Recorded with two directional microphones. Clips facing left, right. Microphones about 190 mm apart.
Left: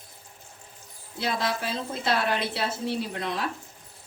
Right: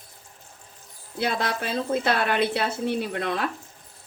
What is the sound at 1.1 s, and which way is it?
A woman's voice, 60° right (ahead or behind).